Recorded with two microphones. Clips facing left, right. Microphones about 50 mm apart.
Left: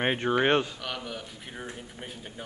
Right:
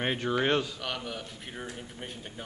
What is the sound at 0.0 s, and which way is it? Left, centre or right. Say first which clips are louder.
Speech: left 3 dB; left.